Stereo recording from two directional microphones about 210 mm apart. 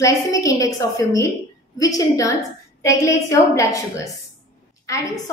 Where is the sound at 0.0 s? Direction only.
15° left (ahead or behind).